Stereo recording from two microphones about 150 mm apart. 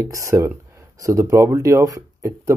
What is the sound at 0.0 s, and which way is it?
Speech, 20° right (ahead or behind).